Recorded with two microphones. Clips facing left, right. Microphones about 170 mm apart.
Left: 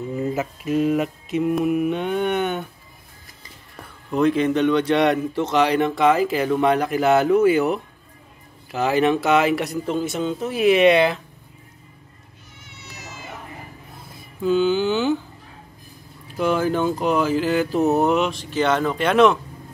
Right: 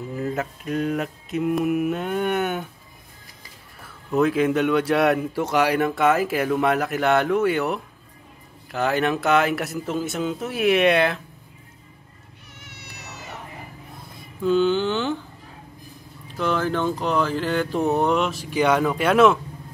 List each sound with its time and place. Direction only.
0.1 s a man's voice: centre (ahead or behind)
4.1 s a man's voice: 5° right (ahead or behind)
12.6 s cat: 65° right (ahead or behind)
14.4 s a man's voice: 5° left (ahead or behind)
16.3 s a man's voice: 10° left (ahead or behind); by 19.3 s 5° right (ahead or behind)